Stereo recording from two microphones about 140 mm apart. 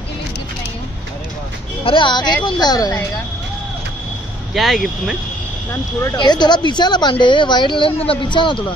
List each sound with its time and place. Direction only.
1.9 s speech: 35° left (ahead or behind)
4.6 s speech: centre (ahead or behind)
6.1 s speech: 30° left (ahead or behind)